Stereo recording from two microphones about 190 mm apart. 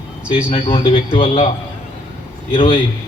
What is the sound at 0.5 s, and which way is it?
A man's voice, 25° left (ahead or behind).